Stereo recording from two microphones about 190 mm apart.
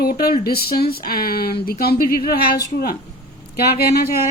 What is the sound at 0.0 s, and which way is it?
A woman's voice, 55° left (ahead or behind).